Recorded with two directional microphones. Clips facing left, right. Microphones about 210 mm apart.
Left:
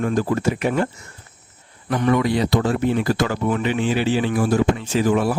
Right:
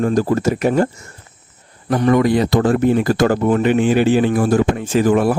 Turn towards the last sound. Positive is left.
turn(degrees=-55)  # may be behind; listen again after turning